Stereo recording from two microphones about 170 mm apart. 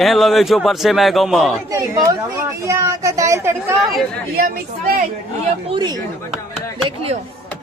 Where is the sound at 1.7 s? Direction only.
20° right (ahead or behind).